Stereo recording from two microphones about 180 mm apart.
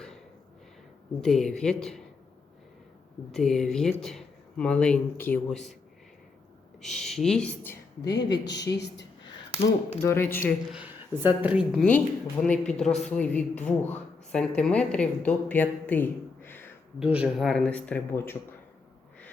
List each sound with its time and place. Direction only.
1.2 s speech: centre (ahead or behind)
3.3 s speech: centre (ahead or behind)
6.8 s speech: centre (ahead or behind)
8.0 s speech: 70° left (ahead or behind)
10.0 s speech: 15° left (ahead or behind)
10.7 s speech: 10° right (ahead or behind); by 16.6 s 10° left (ahead or behind)
17.0 s speech: 5° right (ahead or behind); by 18.3 s 10° left (ahead or behind)